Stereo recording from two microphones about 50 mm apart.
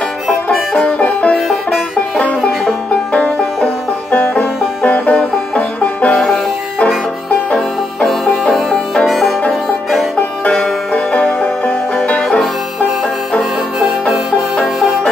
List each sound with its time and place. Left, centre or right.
0.3 s music: centre
1.3 s banjo: centre
2.1 s music: left
2.9 s banjo: left
4.8 s banjo: left
7.5 s banjo: centre
9.0 s music: centre
10.4 s music: centre
12.2 s music: centre
13.4 s music: centre